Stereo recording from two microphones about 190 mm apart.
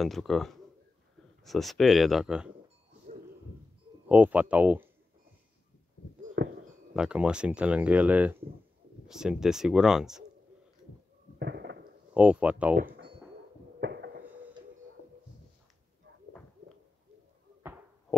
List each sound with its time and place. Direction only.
0.0 s speech: centre (ahead or behind)
4.1 s speech: 10° right (ahead or behind)
6.4 s a sound: 65° right (ahead or behind)
6.9 s speech: 5° right (ahead or behind)
11.3 s a sound: 65° right (ahead or behind)
12.1 s speech: 10° right (ahead or behind)
13.7 s heart murmur: 65° right (ahead or behind)